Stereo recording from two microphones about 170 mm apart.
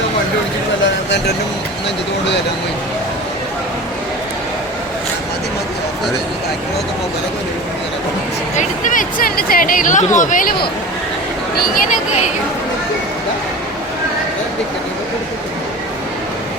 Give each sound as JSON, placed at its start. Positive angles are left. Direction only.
{"t": 8.5, "sound": "speech", "side_deg": 50}